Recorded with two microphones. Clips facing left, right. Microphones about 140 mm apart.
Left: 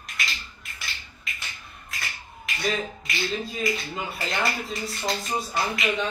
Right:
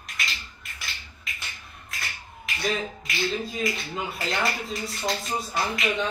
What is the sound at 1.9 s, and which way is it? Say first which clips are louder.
Finger snapping: even; centre (ahead or behind).